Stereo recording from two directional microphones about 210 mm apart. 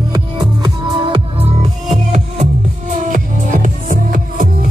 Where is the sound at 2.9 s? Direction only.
35° right (ahead or behind).